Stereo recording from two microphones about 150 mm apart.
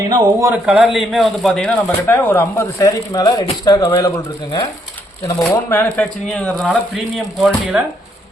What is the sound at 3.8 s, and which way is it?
Speech, 15° left (ahead or behind).